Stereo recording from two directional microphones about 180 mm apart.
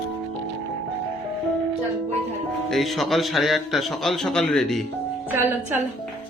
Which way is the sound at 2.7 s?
Centre (ahead or behind).